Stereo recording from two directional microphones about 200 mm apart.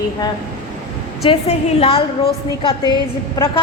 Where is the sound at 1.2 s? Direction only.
30° left (ahead or behind).